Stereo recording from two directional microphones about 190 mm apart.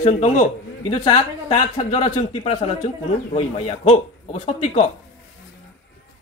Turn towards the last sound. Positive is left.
turn(degrees=35)  # may be behind; listen again after turning